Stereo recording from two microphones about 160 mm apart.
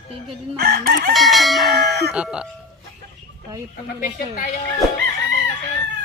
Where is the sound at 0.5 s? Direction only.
85° right.